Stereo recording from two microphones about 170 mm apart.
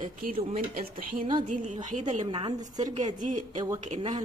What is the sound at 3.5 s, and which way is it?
Speech, 20° right (ahead or behind).